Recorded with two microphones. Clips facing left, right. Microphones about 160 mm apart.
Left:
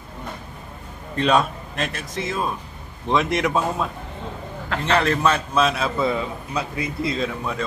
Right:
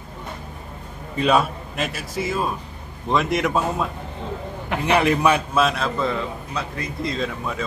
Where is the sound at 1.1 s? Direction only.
5° right (ahead or behind).